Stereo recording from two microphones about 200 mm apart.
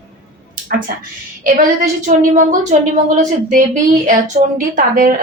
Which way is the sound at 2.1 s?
35° right (ahead or behind).